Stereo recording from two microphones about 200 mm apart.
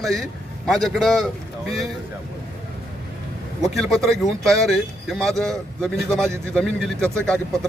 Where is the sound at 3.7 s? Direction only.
Centre (ahead or behind).